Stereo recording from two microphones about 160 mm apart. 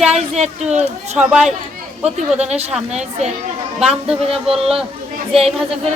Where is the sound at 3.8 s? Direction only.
5° right (ahead or behind).